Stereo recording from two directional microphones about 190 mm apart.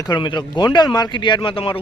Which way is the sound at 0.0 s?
25° left (ahead or behind).